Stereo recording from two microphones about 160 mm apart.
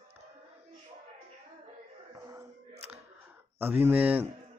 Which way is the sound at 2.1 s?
20° right (ahead or behind).